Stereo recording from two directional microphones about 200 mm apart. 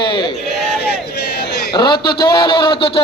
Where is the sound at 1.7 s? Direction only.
20° left (ahead or behind).